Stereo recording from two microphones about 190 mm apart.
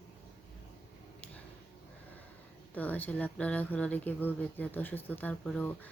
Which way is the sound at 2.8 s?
10° left (ahead or behind).